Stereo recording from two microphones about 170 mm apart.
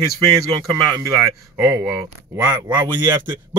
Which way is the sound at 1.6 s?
15° right (ahead or behind).